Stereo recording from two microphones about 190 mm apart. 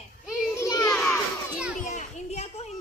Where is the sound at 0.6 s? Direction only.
15° left (ahead or behind).